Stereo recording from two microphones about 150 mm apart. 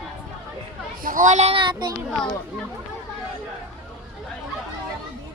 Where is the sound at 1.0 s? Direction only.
60° right (ahead or behind); by 1.9 s 35° right (ahead or behind).